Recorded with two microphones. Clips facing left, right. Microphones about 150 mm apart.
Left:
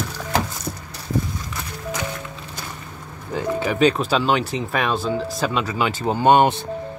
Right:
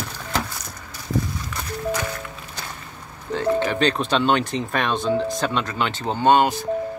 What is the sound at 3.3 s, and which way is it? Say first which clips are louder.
Speech: right 2 dB; 5° left (ahead or behind).